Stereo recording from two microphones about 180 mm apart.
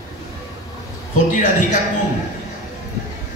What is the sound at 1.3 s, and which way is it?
Speech, 45° left (ahead or behind).